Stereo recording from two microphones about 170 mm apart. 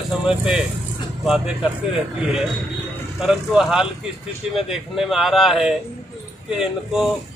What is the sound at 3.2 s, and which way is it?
Speech, 5° right (ahead or behind).